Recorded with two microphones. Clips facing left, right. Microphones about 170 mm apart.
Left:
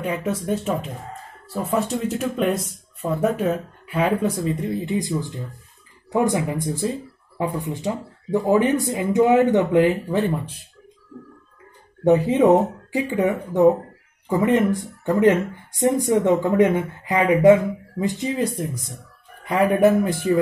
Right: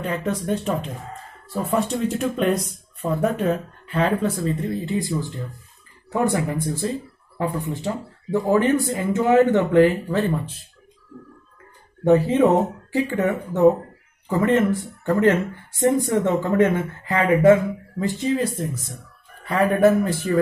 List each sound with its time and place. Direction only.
0.0 s speech: 10° left (ahead or behind)
12.0 s speech: 20° left (ahead or behind)